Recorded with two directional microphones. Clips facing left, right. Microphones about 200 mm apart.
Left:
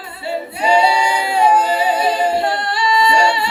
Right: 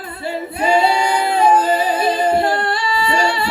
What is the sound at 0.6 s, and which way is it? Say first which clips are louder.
A capella: even; 50° right (ahead or behind).